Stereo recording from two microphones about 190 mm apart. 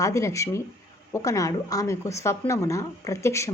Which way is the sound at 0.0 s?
15° left (ahead or behind).